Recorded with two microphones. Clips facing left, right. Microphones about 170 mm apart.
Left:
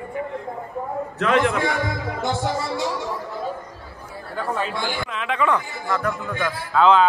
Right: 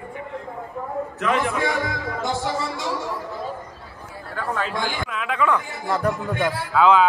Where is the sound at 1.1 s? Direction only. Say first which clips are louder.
Left 4 dB; 60° left (ahead or behind).